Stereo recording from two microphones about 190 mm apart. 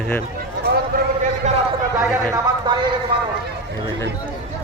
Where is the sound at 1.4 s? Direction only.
40° right (ahead or behind).